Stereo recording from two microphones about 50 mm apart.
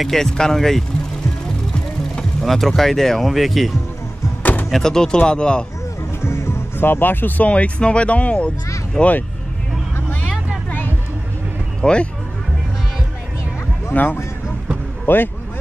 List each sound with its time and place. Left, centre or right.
0.0 s speech: centre
2.4 s speech: centre
4.4 s door: left
4.6 s speech: centre
6.2 s speech: left
7.4 s speech: left
11.8 s speech: centre
13.9 s speech: left
15.1 s speech: left